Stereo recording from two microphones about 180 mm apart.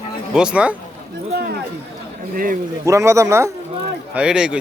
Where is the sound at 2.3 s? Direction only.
50° right (ahead or behind).